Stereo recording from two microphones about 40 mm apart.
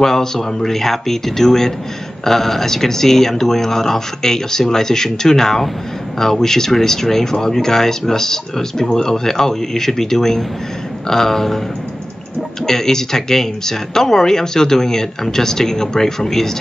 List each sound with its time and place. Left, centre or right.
0.0 s speech: centre
12.6 s speech: centre